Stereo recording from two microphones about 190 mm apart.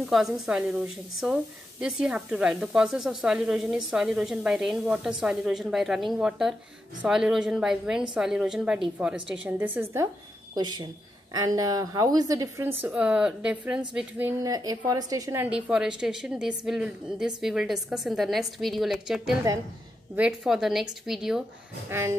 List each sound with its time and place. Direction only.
0.0 s a woman's voice: centre (ahead or behind)
10.5 s a woman's voice: 20° right (ahead or behind)
12.8 s a woman's voice: 5° right (ahead or behind)